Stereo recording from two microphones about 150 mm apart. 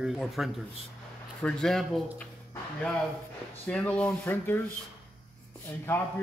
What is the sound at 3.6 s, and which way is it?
Speech, 10° left (ahead or behind).